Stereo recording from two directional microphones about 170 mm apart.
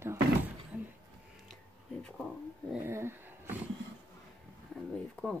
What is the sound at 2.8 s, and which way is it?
Dog, 15° right (ahead or behind).